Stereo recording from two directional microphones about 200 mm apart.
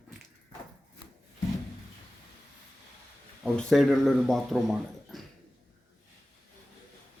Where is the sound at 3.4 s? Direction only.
Centre (ahead or behind).